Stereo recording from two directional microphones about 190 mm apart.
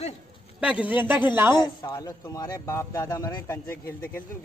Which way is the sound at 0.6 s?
5° right (ahead or behind).